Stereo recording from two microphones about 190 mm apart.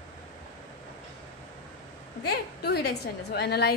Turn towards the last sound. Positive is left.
turn(degrees=60)  # may be behind; listen again after turning